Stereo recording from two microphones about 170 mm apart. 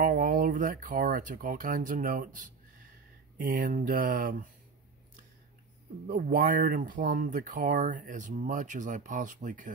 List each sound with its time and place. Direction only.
0.0 s speech: 55° right (ahead or behind)
6.0 s speech: 55° right (ahead or behind)